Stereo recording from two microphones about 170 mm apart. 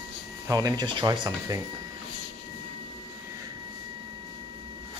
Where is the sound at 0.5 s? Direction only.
20° right (ahead or behind).